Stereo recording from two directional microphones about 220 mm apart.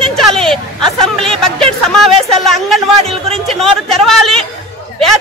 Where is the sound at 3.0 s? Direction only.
25° right (ahead or behind).